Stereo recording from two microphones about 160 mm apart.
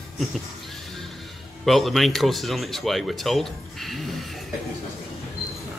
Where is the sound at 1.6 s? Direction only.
Centre (ahead or behind).